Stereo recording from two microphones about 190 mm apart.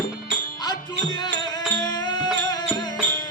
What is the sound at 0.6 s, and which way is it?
Music, 20° left (ahead or behind).